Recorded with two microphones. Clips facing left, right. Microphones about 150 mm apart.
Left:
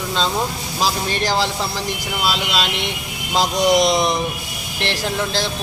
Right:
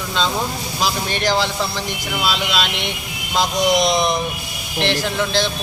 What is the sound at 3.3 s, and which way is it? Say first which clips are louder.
Speech: left 1 dB; 35° left (ahead or behind).